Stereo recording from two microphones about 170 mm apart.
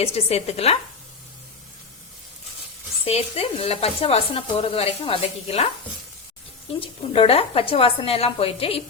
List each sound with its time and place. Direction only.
0.0 s speech: 35° left (ahead or behind)
3.0 s speech: 35° left (ahead or behind)
6.7 s speech: 35° left (ahead or behind)